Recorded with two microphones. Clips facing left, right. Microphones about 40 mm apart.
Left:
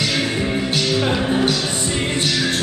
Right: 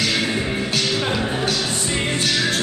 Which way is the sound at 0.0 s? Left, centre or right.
Centre.